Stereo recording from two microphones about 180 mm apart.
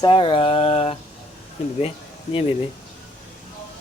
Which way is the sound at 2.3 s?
40° left (ahead or behind).